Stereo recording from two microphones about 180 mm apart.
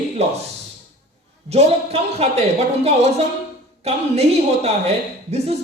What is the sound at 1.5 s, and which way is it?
A woman's voice, 35° right (ahead or behind).